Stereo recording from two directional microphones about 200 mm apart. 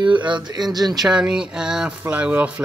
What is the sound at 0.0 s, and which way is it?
Speech, 25° right (ahead or behind).